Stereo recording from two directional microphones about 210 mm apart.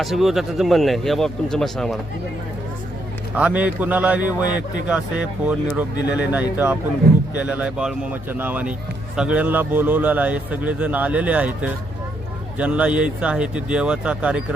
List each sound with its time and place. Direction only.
0.0 s speech: centre (ahead or behind)
3.3 s a man's voice: 5° right (ahead or behind)